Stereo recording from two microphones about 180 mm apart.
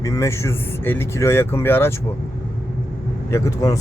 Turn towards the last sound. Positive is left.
turn(degrees=20)  # may be behind; listen again after turning